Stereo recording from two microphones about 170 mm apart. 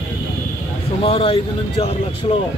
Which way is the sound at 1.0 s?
30° left (ahead or behind).